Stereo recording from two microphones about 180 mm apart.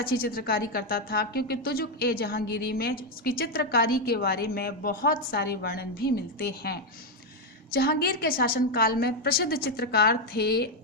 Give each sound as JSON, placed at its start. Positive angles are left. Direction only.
{"t": 0.0, "sound": "a woman's voice", "side_deg": 55}